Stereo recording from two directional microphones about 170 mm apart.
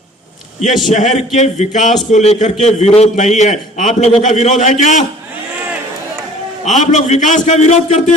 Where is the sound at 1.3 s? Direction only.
40° left (ahead or behind).